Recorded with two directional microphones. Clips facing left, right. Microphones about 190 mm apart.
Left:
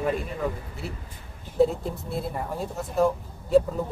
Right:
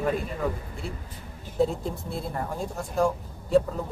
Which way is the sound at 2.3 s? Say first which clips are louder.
Even; 5° left (ahead or behind).